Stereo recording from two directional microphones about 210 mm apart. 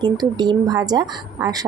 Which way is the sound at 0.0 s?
20° right (ahead or behind).